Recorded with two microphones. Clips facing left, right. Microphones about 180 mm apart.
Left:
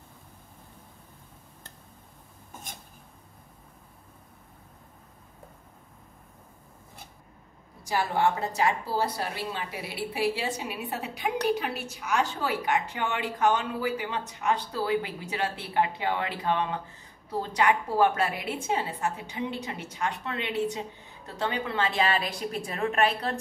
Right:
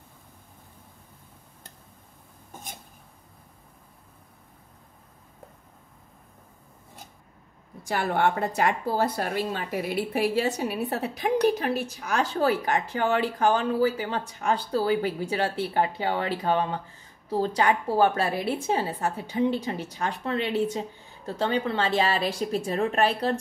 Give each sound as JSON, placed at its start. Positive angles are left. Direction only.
{"t": 7.9, "sound": "speech", "side_deg": -60}